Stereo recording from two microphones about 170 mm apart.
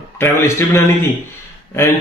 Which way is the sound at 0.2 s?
15° left (ahead or behind).